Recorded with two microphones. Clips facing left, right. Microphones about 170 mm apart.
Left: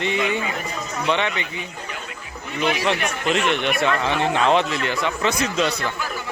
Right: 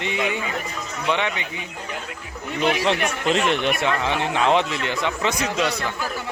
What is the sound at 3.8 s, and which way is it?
A man's voice, 20° right (ahead or behind).